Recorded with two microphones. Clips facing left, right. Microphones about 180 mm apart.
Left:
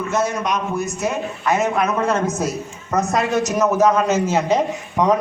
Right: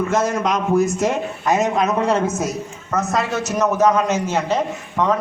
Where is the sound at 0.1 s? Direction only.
90° right.